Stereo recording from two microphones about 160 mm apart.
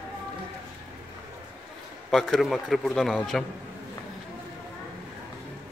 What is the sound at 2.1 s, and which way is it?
A man's voice, centre (ahead or behind).